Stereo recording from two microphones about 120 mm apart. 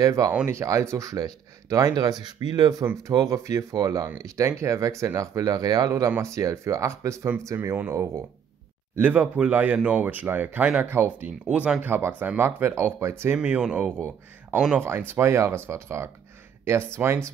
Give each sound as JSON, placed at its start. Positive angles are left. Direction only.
{"t": 0.0, "sound": "speech", "side_deg": -30}